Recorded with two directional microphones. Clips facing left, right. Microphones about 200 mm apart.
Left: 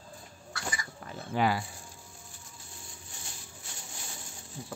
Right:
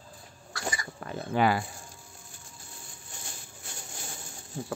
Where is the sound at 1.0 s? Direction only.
60° right (ahead or behind).